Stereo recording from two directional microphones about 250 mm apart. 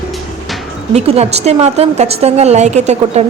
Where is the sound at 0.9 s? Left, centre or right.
Right.